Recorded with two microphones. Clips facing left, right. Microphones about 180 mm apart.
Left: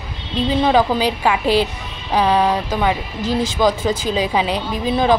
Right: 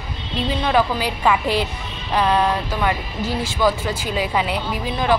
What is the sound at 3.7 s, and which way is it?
Speech, 20° left (ahead or behind).